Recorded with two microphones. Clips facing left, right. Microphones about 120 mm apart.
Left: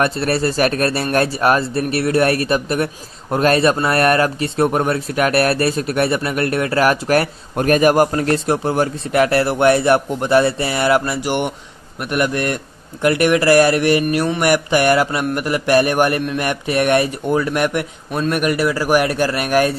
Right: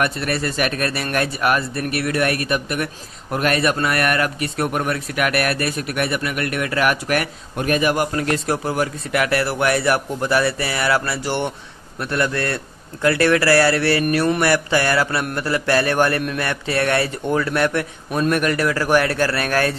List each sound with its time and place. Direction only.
0.0 s speech: 30° left (ahead or behind)
7.6 s a man's voice: 45° left (ahead or behind)
8.5 s speech: 30° left (ahead or behind)